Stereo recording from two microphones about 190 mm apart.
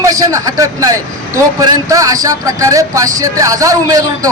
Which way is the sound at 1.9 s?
20° right (ahead or behind).